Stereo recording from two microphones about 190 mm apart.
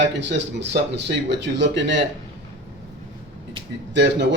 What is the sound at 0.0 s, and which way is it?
A man's voice, 65° right (ahead or behind).